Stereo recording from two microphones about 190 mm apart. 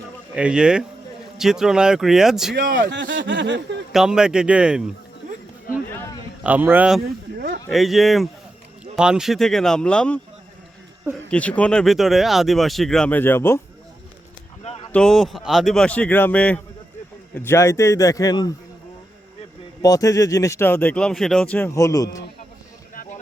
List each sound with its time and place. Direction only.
0.3 s speech: 5° right (ahead or behind)
2.6 s a man's voice: 45° right (ahead or behind)
2.9 s speech: 70° right (ahead or behind)
3.9 s speech: 5° right (ahead or behind)
5.9 s a sound: 15° left (ahead or behind)
6.4 s a man's voice: 10° right (ahead or behind)
7.3 s a sound: 60° right (ahead or behind)
7.7 s speech: centre (ahead or behind)
11.3 s speech: 5° left (ahead or behind)
14.9 s speech: centre (ahead or behind); by 18.5 s 20° left (ahead or behind)
19.8 s speech: 15° left (ahead or behind)